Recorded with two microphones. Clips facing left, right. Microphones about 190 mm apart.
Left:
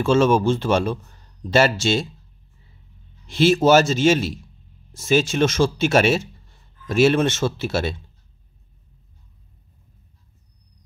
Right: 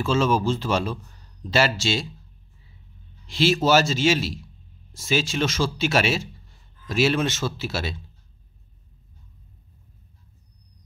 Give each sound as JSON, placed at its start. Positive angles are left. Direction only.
{"t": 0.0, "sound": "speech", "side_deg": 50}
{"t": 3.3, "sound": "speech", "side_deg": 50}